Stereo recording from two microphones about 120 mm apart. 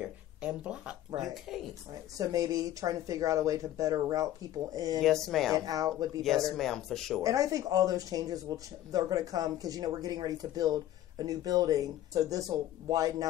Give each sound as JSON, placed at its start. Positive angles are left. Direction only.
{"t": 0.0, "sound": "speech", "side_deg": -10}
{"t": 2.1, "sound": "speech", "side_deg": -30}
{"t": 5.0, "sound": "speech", "side_deg": 5}
{"t": 5.5, "sound": "speech", "side_deg": -30}
{"t": 6.5, "sound": "speech", "side_deg": 5}
{"t": 7.2, "sound": "speech", "side_deg": -30}